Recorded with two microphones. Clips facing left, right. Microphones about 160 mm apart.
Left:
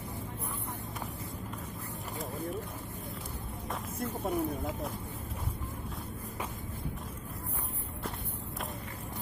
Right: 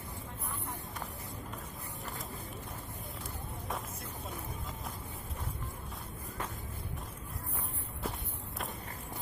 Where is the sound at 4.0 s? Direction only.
60° left (ahead or behind).